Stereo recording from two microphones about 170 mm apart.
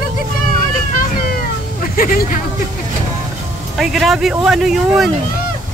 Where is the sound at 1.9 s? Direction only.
60° left (ahead or behind).